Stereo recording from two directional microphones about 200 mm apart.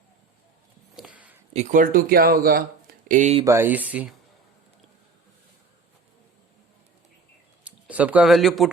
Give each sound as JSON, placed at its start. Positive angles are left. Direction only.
{"t": 0.9, "sound": "a sound", "side_deg": -5}
{"t": 1.5, "sound": "speech", "side_deg": -40}
{"t": 3.4, "sound": "speech", "side_deg": -10}
{"t": 7.6, "sound": "speech", "side_deg": -5}